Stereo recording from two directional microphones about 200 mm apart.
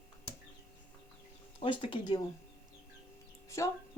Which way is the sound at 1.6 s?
25° left (ahead or behind).